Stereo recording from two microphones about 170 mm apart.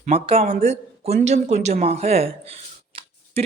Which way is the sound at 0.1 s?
35° right (ahead or behind).